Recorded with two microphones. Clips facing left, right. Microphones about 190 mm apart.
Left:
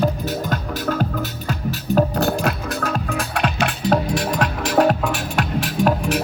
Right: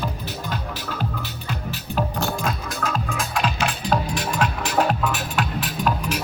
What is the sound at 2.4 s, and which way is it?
Music, 65° left (ahead or behind).